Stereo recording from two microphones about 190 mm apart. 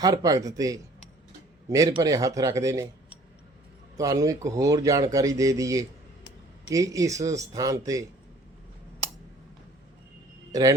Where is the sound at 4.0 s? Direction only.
20° right (ahead or behind).